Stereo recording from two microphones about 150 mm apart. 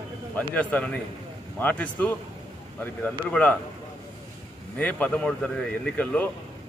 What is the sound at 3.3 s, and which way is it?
Speech, 10° left (ahead or behind).